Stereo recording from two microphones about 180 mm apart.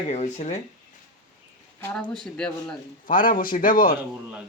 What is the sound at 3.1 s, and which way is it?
Speech, 50° left (ahead or behind).